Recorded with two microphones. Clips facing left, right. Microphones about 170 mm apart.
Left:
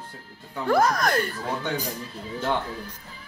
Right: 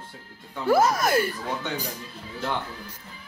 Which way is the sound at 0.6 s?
5° right (ahead or behind).